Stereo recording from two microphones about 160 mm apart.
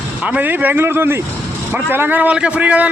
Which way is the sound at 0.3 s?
10° right (ahead or behind).